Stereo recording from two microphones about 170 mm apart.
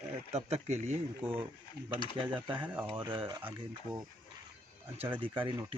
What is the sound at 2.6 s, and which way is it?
Speech, 10° right (ahead or behind).